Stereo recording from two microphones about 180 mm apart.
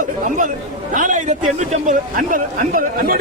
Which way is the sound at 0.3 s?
45° right (ahead or behind).